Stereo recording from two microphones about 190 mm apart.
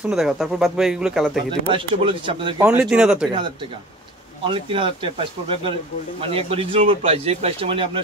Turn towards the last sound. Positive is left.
turn(degrees=-30)  # may be behind; listen again after turning